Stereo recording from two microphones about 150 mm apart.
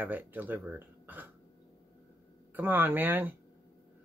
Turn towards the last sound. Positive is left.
turn(degrees=-15)  # may be behind; listen again after turning